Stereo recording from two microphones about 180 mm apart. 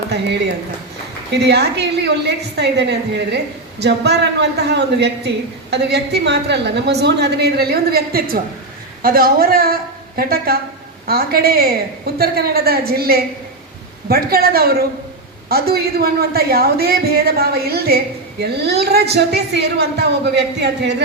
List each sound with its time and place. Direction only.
1.3 s a woman's voice: 70° right (ahead or behind)